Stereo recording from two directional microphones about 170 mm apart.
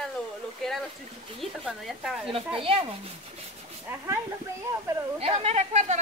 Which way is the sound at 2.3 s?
30° right (ahead or behind).